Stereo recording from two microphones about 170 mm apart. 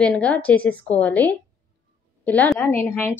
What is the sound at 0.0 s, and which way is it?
A woman's voice, 5° left (ahead or behind).